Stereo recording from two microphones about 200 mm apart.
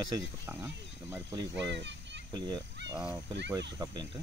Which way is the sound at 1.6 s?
60° right (ahead or behind).